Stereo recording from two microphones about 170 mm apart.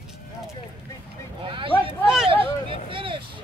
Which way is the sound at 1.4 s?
30° right (ahead or behind).